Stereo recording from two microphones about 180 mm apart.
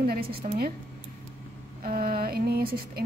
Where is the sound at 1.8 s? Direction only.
55° right (ahead or behind).